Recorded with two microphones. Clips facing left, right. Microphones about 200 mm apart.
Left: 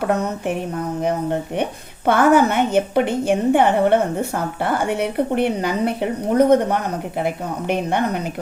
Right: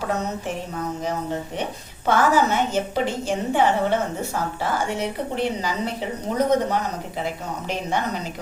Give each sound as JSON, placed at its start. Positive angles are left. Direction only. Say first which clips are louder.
{"t": 0.0, "sound": "a woman's voice", "louder": "left 5 dB", "side_deg": 60}
{"t": 2.0, "sound": "a woman's voice", "louder": "left 5 dB", "side_deg": 60}